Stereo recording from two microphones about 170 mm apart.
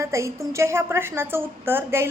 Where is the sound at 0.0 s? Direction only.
15° right (ahead or behind).